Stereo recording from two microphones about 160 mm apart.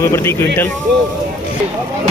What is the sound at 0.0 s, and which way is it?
Speech, 15° left (ahead or behind).